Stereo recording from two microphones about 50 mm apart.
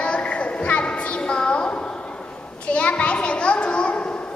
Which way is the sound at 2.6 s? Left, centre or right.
Left.